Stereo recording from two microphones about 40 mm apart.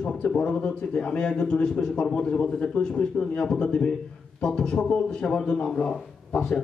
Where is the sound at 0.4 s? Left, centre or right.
Left.